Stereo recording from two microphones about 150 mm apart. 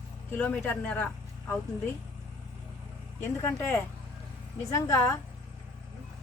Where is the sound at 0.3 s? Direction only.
10° left (ahead or behind).